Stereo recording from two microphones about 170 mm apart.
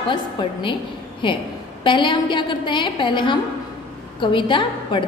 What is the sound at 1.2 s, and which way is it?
A woman's voice, 30° left (ahead or behind).